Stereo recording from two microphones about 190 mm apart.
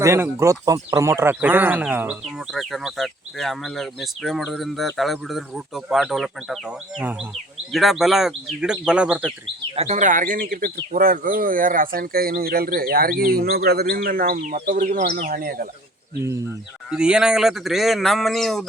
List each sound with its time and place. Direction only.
0.0 s speech: 15° right (ahead or behind)
9.7 s speech: 35° right (ahead or behind)
16.9 s speech: 5° right (ahead or behind)